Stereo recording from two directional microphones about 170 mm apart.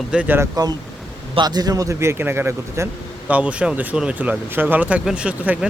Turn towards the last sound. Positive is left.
turn(degrees=-5)  # may be behind; listen again after turning